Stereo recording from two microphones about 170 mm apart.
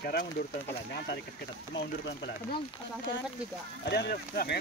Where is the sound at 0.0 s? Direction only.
65° left (ahead or behind).